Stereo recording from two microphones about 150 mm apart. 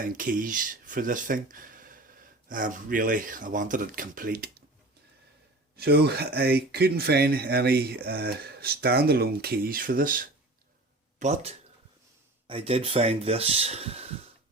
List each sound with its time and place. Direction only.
0.0 s speech: 65° right (ahead or behind)
5.7 s speech: 90° right; by 10.2 s 70° right (ahead or behind)
11.2 s speech: 50° right (ahead or behind)